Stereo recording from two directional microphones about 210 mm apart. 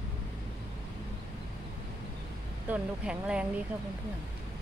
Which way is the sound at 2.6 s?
5° right (ahead or behind).